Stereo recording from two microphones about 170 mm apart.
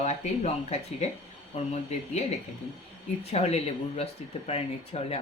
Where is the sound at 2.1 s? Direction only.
40° left (ahead or behind).